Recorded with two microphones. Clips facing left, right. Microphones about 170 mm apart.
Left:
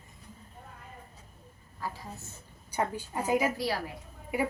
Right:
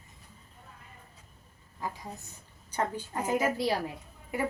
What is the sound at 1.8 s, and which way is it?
Speech, 15° right (ahead or behind).